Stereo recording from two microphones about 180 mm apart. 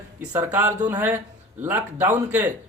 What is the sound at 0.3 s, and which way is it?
Speech, 10° right (ahead or behind).